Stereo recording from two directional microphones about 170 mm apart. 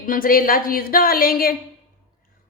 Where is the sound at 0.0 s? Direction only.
55° left (ahead or behind).